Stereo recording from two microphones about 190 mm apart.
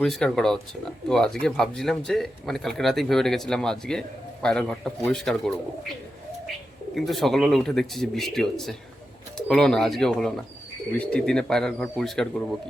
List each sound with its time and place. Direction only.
0.0 s speech: 5° left (ahead or behind)
6.9 s speech: centre (ahead or behind)